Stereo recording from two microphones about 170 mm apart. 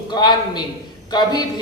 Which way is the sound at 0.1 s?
25° left (ahead or behind).